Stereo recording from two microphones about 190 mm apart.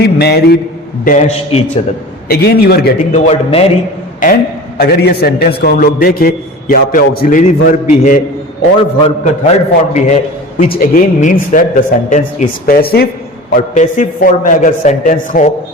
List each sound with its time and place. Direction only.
0.0 s a man's voice: 60° left (ahead or behind)
1.0 s a man's voice: 45° left (ahead or behind)
2.3 s a man's voice: 55° left (ahead or behind)
3.1 s a man's voice: 35° left (ahead or behind)
4.2 s a man's voice: 45° left (ahead or behind)
4.8 s a man's voice: 55° left (ahead or behind); by 10.2 s 40° left (ahead or behind)
10.6 s a man's voice: 50° left (ahead or behind)
13.5 s a man's voice: 40° left (ahead or behind)